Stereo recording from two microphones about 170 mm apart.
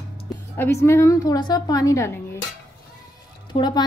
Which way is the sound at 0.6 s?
15° left (ahead or behind).